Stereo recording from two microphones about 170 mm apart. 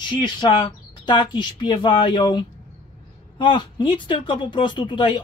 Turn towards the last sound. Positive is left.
turn(degrees=25)  # may be behind; listen again after turning